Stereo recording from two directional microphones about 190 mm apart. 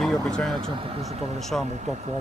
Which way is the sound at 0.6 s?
30° right (ahead or behind).